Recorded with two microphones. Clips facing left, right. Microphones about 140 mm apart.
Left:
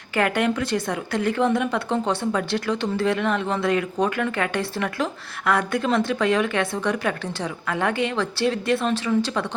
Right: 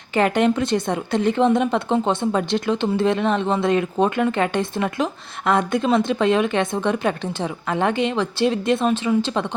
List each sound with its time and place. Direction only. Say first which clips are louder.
0.1 s a woman's voice: right 4 dB; 25° right (ahead or behind)